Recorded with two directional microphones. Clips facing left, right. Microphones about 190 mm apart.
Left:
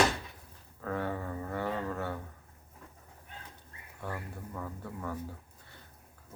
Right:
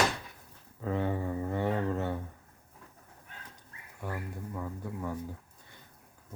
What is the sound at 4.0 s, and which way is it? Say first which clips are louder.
Speech: right 2 dB; 15° right (ahead or behind).